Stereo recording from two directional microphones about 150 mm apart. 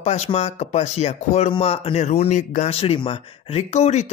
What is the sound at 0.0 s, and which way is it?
Speech, 45° left (ahead or behind).